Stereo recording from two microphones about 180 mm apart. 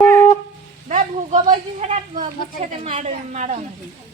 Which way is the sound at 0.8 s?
40° right (ahead or behind).